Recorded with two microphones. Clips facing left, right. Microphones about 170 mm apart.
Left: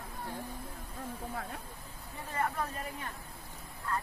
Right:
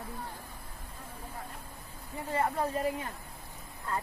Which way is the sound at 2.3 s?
30° right (ahead or behind).